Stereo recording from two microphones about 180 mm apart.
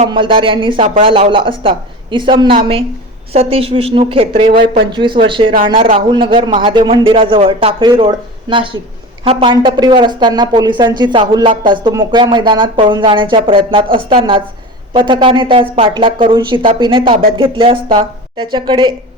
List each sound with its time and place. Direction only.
0.1 s speech: 30° right (ahead or behind)